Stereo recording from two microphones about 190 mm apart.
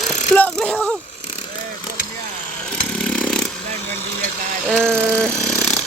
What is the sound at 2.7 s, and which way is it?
Chainsaw, 5° left (ahead or behind).